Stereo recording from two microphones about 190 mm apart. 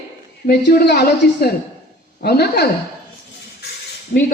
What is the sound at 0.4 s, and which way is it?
A woman's voice, 55° left (ahead or behind).